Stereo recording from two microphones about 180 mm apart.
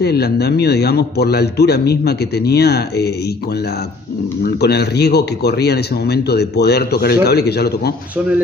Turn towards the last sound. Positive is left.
turn(degrees=65)  # may be behind; listen again after turning